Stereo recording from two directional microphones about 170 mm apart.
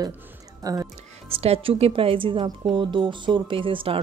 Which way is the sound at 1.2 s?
35° right (ahead or behind).